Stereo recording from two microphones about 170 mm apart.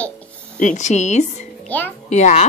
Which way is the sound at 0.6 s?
45° left (ahead or behind).